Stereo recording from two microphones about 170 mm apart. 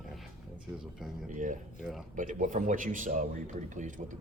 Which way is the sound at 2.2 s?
50° right (ahead or behind).